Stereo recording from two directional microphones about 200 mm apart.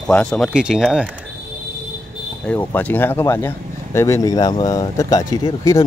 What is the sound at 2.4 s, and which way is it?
Speech, 5° left (ahead or behind).